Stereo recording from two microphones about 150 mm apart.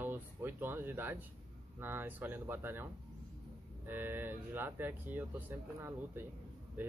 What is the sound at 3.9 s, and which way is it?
Speech, 15° right (ahead or behind).